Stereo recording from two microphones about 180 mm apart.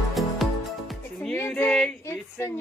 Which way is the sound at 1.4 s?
10° left (ahead or behind).